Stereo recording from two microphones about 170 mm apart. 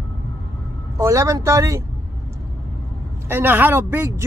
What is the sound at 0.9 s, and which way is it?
Speech, 15° right (ahead or behind).